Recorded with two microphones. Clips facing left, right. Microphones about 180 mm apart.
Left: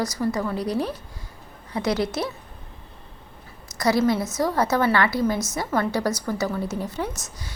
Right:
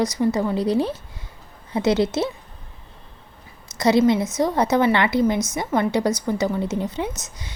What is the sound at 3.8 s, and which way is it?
A woman's voice, 20° right (ahead or behind).